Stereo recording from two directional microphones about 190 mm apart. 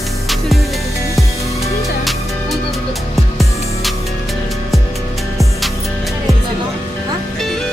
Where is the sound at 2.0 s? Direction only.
Centre (ahead or behind).